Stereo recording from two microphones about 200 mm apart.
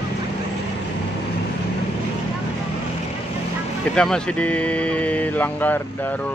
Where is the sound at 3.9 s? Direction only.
5° left (ahead or behind).